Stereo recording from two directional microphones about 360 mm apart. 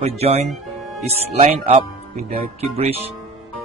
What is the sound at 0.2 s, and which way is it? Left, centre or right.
Speech, centre.